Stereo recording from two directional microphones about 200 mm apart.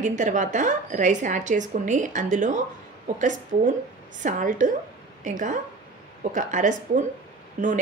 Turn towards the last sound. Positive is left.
turn(degrees=-40)  # may be behind; listen again after turning